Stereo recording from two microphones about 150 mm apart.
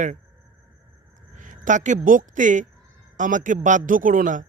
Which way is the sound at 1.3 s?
60° right (ahead or behind).